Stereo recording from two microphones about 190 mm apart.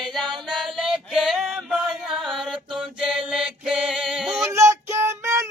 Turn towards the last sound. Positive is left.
turn(degrees=-15)  # may be behind; listen again after turning